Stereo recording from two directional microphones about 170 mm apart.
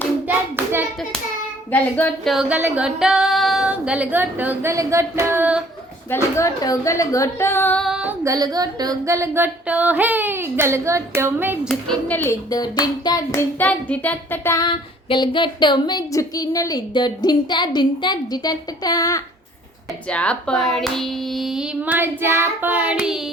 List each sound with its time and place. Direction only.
0.3 s hands: 10° right (ahead or behind)
1.7 s speech: 10° left (ahead or behind)
2.3 s a sound: 5° right (ahead or behind)
6.1 s speech: 15° left (ahead or behind)
7.9 s speech: 5° right (ahead or behind)
8.2 s a sound: 20° right (ahead or behind)
11.7 s speech: 5° left (ahead or behind); by 13.4 s 20° left (ahead or behind)
13.6 s speech: 10° left (ahead or behind)
15.1 s a woman's voice: 30° left (ahead or behind)
20.1 s speech: 5° left (ahead or behind)